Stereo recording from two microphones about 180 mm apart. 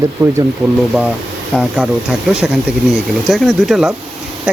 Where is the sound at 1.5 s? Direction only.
5° right (ahead or behind).